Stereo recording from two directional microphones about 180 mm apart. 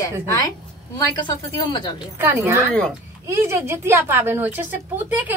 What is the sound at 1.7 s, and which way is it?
Speech, 25° left (ahead or behind).